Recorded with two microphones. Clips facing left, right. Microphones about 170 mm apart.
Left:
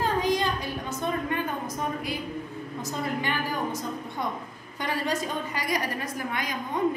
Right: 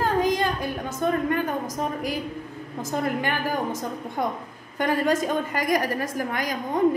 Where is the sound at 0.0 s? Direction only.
50° right (ahead or behind).